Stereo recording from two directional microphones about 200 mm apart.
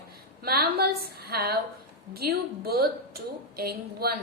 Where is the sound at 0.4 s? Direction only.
50° right (ahead or behind).